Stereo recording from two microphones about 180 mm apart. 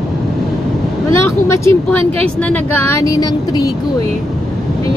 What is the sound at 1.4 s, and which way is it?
A woman's voice, 15° left (ahead or behind).